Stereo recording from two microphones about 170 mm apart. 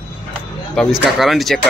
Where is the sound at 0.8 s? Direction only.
Centre (ahead or behind).